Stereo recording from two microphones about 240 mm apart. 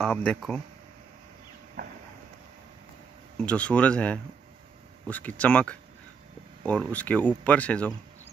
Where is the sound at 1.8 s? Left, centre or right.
Right.